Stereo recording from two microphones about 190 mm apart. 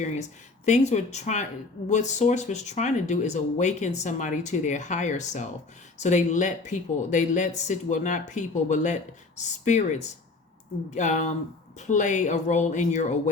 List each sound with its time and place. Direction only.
0.0 s speech: 40° left (ahead or behind)